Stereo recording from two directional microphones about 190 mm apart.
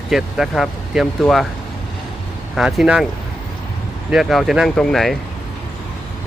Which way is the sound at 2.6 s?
5° right (ahead or behind).